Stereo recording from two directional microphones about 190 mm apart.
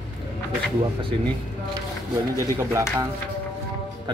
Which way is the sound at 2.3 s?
15° right (ahead or behind).